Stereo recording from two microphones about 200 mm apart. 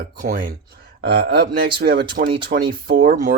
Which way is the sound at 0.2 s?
45° right (ahead or behind).